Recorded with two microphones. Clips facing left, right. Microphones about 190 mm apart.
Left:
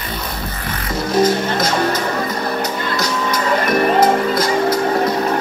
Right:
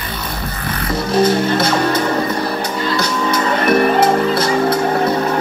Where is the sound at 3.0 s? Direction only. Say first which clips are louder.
Right 1 dB; 30° right (ahead or behind).